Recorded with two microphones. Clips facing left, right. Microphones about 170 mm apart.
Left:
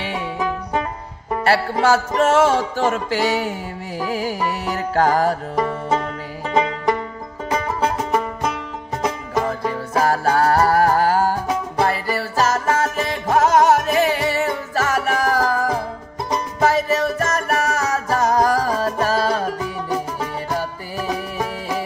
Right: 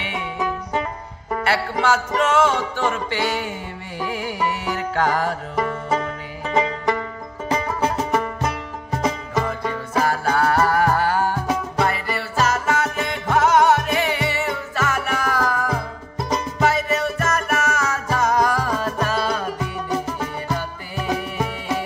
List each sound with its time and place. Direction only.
1.4 s music: 40° left (ahead or behind)
6.5 s music: 5° right (ahead or behind)
9.9 s music: 40° left (ahead or behind)